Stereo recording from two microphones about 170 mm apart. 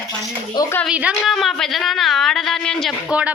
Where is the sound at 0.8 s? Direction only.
5° right (ahead or behind).